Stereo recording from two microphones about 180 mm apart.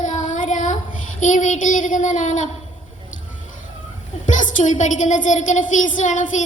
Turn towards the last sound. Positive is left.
turn(degrees=45)  # may be behind; listen again after turning